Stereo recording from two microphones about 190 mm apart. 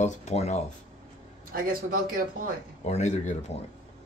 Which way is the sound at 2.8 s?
35° left (ahead or behind).